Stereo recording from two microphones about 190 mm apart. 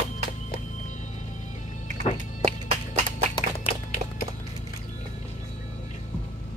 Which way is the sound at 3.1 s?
30° left (ahead or behind).